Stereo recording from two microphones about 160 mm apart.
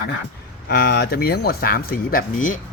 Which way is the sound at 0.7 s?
90° left.